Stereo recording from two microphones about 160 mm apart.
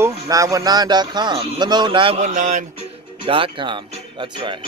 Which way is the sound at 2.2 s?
50° right (ahead or behind).